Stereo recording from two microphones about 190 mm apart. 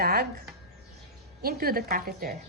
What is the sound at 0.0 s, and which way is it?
A woman's voice, 55° right (ahead or behind).